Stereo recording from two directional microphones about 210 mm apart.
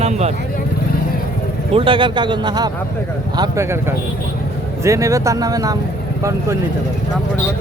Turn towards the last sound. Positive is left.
turn(degrees=-15)  # may be behind; listen again after turning